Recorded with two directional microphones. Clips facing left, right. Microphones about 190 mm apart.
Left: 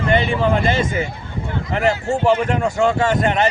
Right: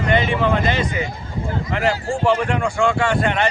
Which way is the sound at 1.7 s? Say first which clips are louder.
Left 3 dB; 25° left (ahead or behind).